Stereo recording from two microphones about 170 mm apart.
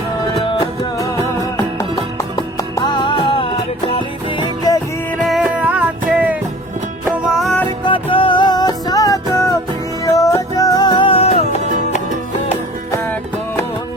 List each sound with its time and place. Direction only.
0.4 s music: 20° left (ahead or behind)
2.7 s music: 25° left (ahead or behind)
5.3 s music: 5° right (ahead or behind)
7.9 s music: 30° left (ahead or behind)